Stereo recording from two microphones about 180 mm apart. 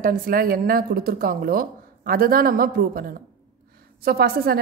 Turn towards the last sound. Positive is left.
turn(degrees=-55)  # may be behind; listen again after turning